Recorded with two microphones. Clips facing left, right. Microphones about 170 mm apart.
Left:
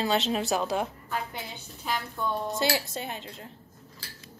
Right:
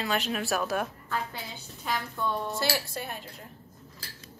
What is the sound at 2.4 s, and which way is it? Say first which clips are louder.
Speech: left 2 dB; 20° left (ahead or behind).